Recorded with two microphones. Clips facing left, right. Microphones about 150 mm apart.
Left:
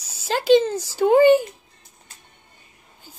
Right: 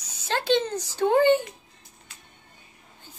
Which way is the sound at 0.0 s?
5° left (ahead or behind).